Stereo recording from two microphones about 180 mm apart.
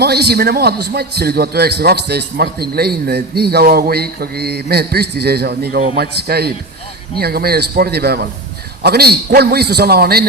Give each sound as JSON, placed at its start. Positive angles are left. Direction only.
{"t": 0.0, "sound": "a man's voice", "side_deg": -60}